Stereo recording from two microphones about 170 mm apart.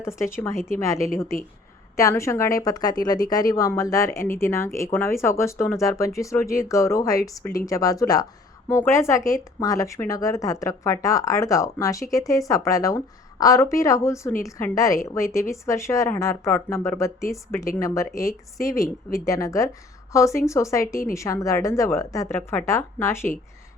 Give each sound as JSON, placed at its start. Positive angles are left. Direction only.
{"t": 0.0, "sound": "a woman's voice", "side_deg": 15}
{"t": 2.0, "sound": "a woman's voice", "side_deg": 15}